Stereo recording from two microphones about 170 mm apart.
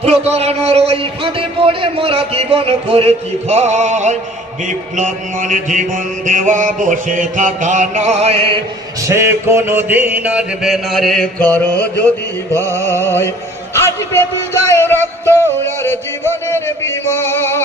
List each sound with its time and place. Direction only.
0.0 s a man's voice: 40° right (ahead or behind)
4.7 s mantra: 50° right (ahead or behind)
9.0 s mantra: 15° right (ahead or behind); by 12.1 s 10° left (ahead or behind)
12.5 s music: 10° left (ahead or behind)
13.8 s a man's voice: 15° left (ahead or behind)
15.6 s music: 15° left (ahead or behind)